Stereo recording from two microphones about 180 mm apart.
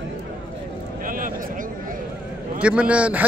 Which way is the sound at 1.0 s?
50° right (ahead or behind).